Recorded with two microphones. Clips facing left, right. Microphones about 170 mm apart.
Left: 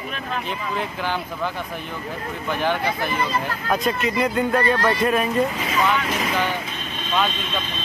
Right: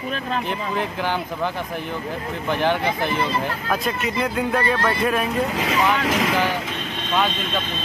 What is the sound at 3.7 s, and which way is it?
Speech, centre (ahead or behind).